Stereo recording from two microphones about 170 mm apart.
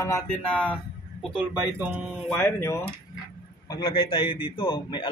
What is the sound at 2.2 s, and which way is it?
Speech, 5° left (ahead or behind).